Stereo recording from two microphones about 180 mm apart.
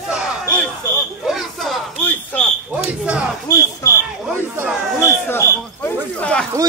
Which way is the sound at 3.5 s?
20° left (ahead or behind).